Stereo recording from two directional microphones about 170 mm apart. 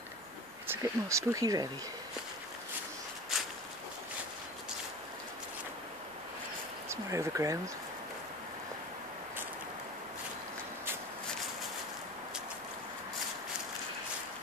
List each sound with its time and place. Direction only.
0.7 s speech: 15° right (ahead or behind)
6.9 s speech: 15° right (ahead or behind)